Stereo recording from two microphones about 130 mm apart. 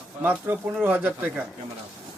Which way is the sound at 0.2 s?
15° right (ahead or behind).